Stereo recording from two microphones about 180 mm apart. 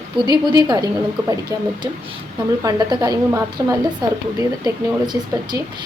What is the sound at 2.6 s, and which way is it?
A woman's voice, 20° right (ahead or behind).